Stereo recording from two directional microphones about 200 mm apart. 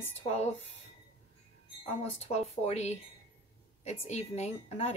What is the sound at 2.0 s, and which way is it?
A woman's voice, 35° left (ahead or behind).